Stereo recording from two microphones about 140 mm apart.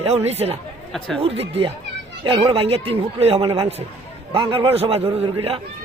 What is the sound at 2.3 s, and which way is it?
A man's voice, 35° right (ahead or behind).